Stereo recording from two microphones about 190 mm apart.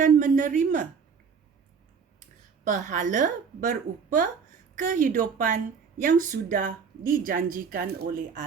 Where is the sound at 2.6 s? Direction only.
40° right (ahead or behind).